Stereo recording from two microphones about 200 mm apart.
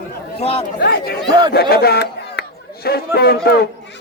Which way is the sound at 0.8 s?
55° left (ahead or behind).